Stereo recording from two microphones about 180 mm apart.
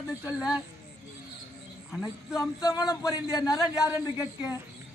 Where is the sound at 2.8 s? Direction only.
20° left (ahead or behind).